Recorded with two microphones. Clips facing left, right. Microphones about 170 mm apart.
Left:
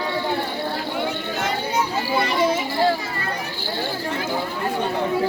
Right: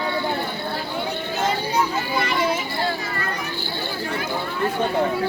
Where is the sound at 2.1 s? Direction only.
25° left (ahead or behind).